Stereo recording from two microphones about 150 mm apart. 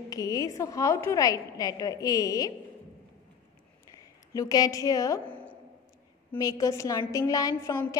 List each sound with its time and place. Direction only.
0.1 s a woman's voice: 25° left (ahead or behind)
4.3 s a woman's voice: 25° left (ahead or behind)
6.3 s a woman's voice: 25° left (ahead or behind)